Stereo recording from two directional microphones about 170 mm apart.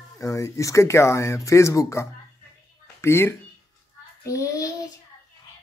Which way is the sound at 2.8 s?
15° left (ahead or behind).